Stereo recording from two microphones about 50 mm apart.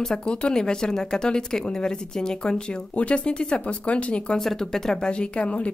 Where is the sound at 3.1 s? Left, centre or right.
Left.